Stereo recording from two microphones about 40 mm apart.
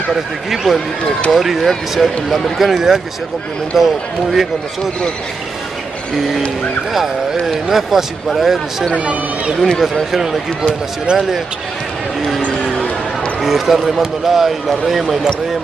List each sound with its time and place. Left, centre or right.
0.7 s speech: centre
6.9 s speech: centre
8.9 s speech: right
9.6 s speech: centre
13.4 s speech: centre